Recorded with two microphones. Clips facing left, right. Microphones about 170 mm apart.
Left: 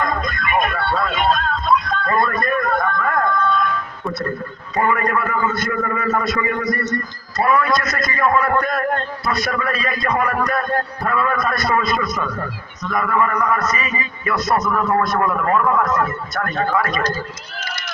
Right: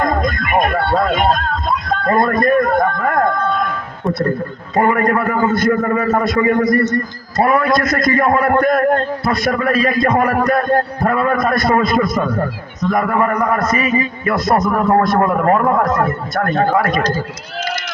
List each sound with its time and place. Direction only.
0.0 s music: 45° right (ahead or behind)
4.7 s a man's voice: 40° right (ahead or behind)
7.9 s a man's voice: 50° right (ahead or behind)
12.1 s a man's voice: 30° right (ahead or behind)
12.9 s a man's voice: 40° right (ahead or behind)
13.6 s a man's voice: 50° right (ahead or behind)
13.9 s a man's voice: 35° right (ahead or behind)
14.5 s a man's voice: 50° right (ahead or behind)
14.8 s a man's voice: 35° right (ahead or behind)